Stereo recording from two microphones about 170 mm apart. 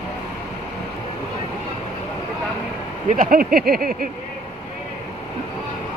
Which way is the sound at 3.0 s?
55° right (ahead or behind).